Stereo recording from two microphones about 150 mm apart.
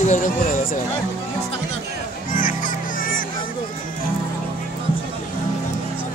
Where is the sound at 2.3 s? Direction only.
65° left (ahead or behind).